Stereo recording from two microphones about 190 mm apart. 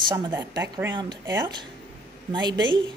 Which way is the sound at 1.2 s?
20° right (ahead or behind).